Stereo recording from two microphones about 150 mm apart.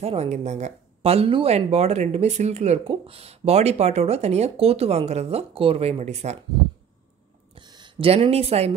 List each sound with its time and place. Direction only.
0.0 s speech: 45° right (ahead or behind)
7.5 s speech: 30° right (ahead or behind)